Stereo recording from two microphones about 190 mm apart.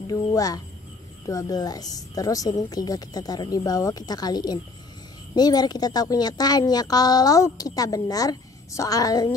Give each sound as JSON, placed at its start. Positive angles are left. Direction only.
{"t": 0.0, "sound": "a woman's voice", "side_deg": 20}